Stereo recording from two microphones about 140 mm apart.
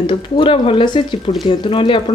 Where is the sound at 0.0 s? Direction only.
35° left (ahead or behind).